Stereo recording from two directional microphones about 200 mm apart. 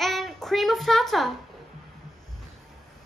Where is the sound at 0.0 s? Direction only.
Centre (ahead or behind).